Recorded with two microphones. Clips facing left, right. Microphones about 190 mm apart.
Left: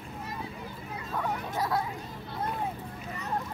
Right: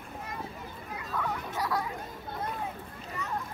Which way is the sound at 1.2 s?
25° left (ahead or behind).